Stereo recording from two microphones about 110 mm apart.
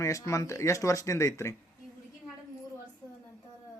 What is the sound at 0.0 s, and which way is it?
Speech, 30° left (ahead or behind).